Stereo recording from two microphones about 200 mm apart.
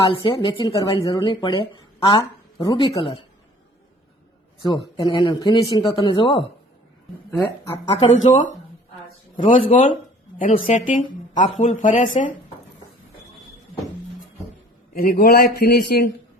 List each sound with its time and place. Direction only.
0.0 s speech: 25° left (ahead or behind)
4.6 s speech: 20° left (ahead or behind)
8.2 s speech: 40° left (ahead or behind)
9.5 s speech: 40° left (ahead or behind)
14.9 s speech: 45° left (ahead or behind)